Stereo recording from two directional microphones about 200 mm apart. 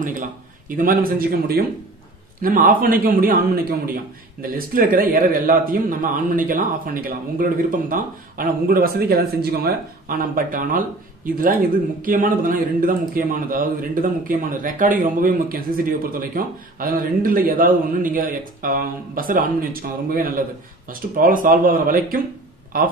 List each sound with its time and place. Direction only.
0.0 s a man's voice: 40° right (ahead or behind)